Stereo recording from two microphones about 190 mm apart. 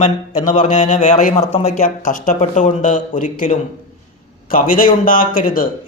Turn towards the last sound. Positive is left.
turn(degrees=45)  # may be behind; listen again after turning